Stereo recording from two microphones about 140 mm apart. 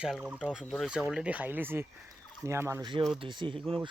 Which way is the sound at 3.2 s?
35° right (ahead or behind).